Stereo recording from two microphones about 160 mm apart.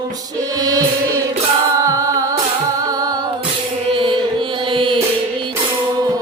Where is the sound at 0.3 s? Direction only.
25° right (ahead or behind).